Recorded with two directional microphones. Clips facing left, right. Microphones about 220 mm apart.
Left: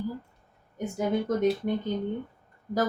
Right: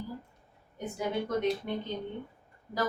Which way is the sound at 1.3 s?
45° left (ahead or behind).